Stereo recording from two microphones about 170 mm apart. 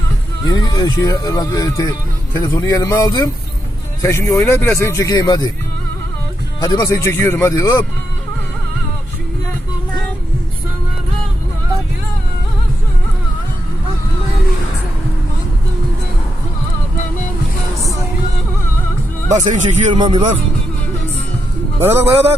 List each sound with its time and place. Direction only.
0.4 s speech: 25° left (ahead or behind)
6.6 s speech: 25° left (ahead or behind)
19.3 s speech: 45° right (ahead or behind)
19.9 s speech: 25° right (ahead or behind)
22.1 s speech: 35° right (ahead or behind)